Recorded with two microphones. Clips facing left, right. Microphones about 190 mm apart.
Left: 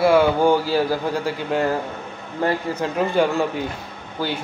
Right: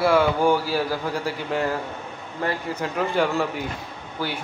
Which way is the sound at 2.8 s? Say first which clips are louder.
Left 3 dB; 20° left (ahead or behind).